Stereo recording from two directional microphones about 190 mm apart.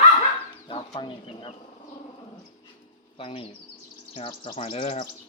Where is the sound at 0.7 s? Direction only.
25° left (ahead or behind).